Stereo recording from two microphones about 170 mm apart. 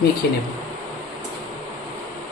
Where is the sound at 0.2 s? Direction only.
70° left (ahead or behind).